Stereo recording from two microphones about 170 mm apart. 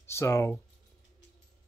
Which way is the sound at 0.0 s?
15° left (ahead or behind).